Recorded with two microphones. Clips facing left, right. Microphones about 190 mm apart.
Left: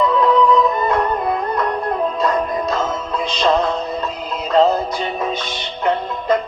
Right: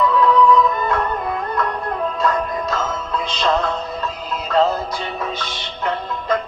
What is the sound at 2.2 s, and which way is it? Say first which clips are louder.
Music: left 2 dB; 20° left (ahead or behind).